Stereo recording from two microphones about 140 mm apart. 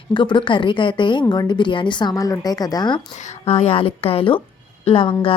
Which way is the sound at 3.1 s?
55° left (ahead or behind).